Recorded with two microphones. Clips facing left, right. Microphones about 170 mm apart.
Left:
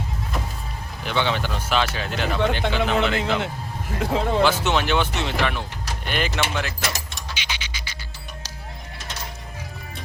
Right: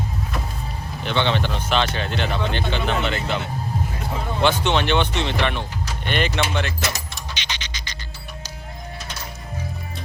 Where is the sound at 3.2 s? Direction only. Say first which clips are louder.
Left 2 dB; 90° left.